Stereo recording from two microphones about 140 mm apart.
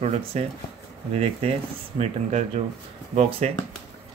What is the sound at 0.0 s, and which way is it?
Speech, 50° right (ahead or behind).